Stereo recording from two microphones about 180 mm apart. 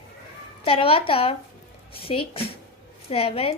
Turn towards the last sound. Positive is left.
turn(degrees=35)  # may be behind; listen again after turning